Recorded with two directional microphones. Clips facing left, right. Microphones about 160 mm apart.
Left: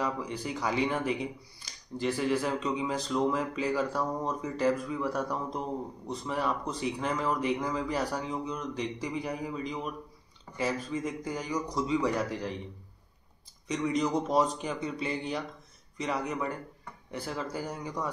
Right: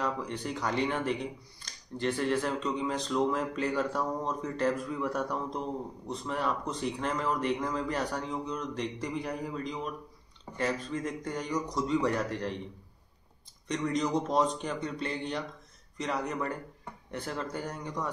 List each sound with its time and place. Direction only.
0.0 s speech: 5° left (ahead or behind)
13.7 s speech: 5° left (ahead or behind)